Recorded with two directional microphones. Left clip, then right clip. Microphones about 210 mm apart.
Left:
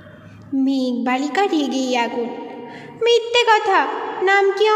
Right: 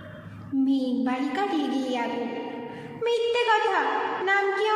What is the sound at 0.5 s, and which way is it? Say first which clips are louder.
A woman's voice: left 5 dB; 35° left (ahead or behind).